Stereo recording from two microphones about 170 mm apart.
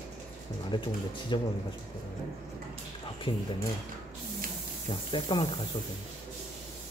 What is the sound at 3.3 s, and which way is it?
Speech, 30° left (ahead or behind).